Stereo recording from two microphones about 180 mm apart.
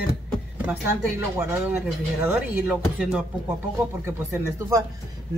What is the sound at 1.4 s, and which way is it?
Speech, 15° right (ahead or behind).